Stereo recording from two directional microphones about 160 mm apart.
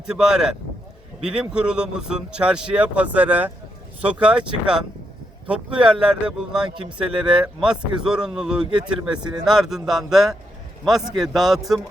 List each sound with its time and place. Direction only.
0.0 s a man's voice: 5° right (ahead or behind)
9.1 s speech: 25° right (ahead or behind)
9.4 s a man's voice: centre (ahead or behind)